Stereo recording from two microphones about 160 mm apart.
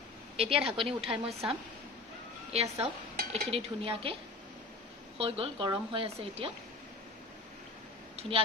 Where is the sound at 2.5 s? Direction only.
40° right (ahead or behind).